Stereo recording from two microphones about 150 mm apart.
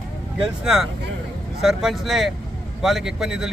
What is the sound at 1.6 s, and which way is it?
Speech, centre (ahead or behind).